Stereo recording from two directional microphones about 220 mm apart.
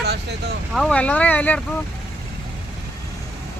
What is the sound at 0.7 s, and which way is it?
Speech, 5° left (ahead or behind).